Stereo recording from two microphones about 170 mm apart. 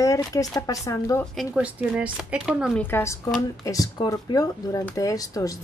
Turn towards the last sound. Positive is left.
turn(degrees=20)  # may be behind; listen again after turning